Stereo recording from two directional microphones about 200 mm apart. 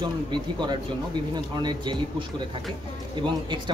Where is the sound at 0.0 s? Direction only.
20° right (ahead or behind).